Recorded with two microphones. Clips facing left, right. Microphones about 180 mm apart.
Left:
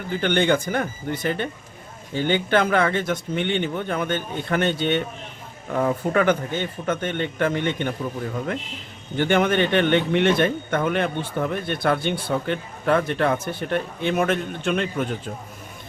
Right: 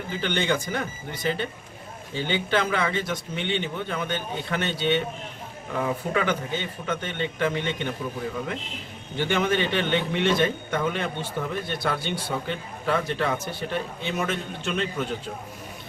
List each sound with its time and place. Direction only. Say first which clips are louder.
0.2 s a man's voice: left 6 dB; 55° left (ahead or behind)
9.1 s a man's voice: left 5 dB; 55° left (ahead or behind)